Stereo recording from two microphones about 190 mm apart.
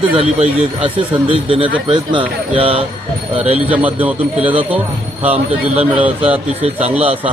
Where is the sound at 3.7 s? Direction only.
5° right (ahead or behind).